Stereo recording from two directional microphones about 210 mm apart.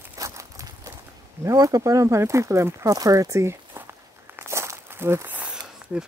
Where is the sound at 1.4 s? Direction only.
15° right (ahead or behind).